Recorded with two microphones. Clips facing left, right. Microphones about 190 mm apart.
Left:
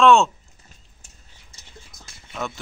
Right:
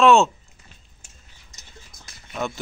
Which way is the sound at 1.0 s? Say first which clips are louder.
Even; 30° left (ahead or behind).